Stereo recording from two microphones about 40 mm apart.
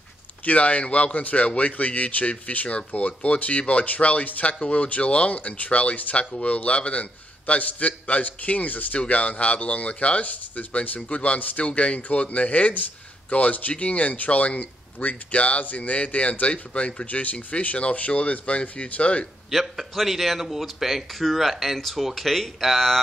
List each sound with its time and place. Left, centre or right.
0.5 s a man's voice: left
19.5 s speech: centre